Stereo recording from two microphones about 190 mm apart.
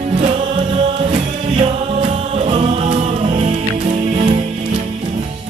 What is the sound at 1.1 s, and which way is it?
Music, 30° right (ahead or behind).